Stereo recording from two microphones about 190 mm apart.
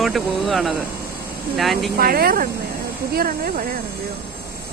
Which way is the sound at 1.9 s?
50° right (ahead or behind).